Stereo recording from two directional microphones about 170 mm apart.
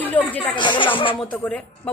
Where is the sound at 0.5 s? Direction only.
25° left (ahead or behind).